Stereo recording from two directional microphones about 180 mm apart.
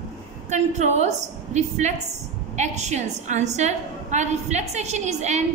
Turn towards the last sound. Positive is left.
turn(degrees=-40)  # may be behind; listen again after turning